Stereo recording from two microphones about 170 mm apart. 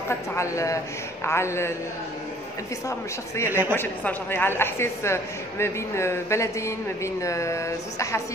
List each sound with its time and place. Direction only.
0.4 s a woman's voice: 20° left (ahead or behind)
3.4 s speech: 10° right (ahead or behind)
3.7 s a woman's voice: 10° left (ahead or behind)